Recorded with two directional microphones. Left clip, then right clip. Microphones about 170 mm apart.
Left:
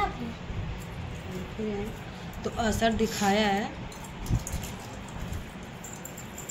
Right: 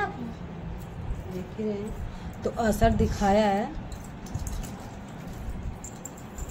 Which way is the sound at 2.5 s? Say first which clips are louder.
Right 2 dB; 65° right (ahead or behind).